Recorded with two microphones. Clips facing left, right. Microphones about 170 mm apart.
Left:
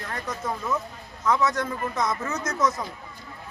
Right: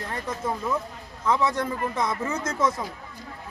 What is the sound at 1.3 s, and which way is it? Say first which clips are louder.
A man's voice: even; 30° right (ahead or behind).